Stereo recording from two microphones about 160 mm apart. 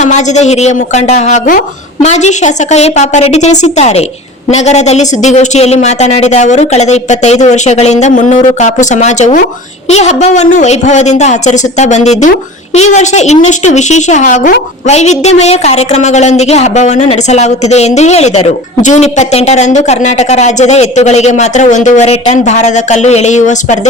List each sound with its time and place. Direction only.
0.0 s a woman's voice: 45° left (ahead or behind)